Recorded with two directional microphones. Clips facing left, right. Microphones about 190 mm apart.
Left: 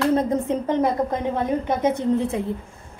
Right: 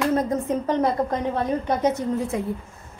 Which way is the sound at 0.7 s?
20° left (ahead or behind).